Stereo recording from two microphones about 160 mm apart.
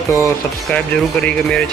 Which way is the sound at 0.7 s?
5° left (ahead or behind).